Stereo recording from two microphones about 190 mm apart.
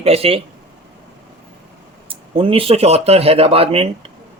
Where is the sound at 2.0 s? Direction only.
30° right (ahead or behind).